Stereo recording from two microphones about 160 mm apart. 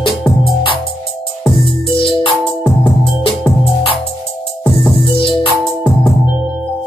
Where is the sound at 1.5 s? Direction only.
30° left (ahead or behind).